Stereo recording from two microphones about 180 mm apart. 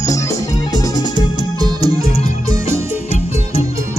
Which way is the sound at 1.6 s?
20° right (ahead or behind).